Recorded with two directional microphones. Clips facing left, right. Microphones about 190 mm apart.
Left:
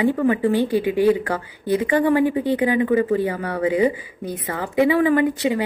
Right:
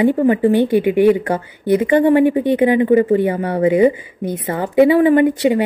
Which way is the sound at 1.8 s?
30° right (ahead or behind).